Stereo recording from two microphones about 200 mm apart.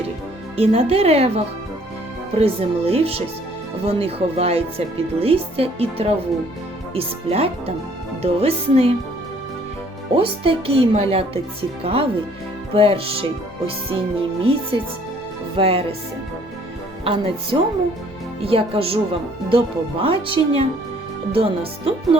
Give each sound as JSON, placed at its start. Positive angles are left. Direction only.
{"t": 0.5, "sound": "speech", "side_deg": -30}
{"t": 10.2, "sound": "speech", "side_deg": -30}
{"t": 17.0, "sound": "speech", "side_deg": -30}